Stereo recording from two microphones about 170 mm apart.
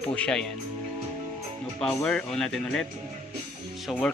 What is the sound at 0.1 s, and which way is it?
Speech, 5° left (ahead or behind).